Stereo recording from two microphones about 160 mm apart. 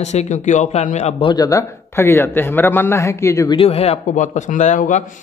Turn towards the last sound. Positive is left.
turn(degrees=50)  # may be behind; listen again after turning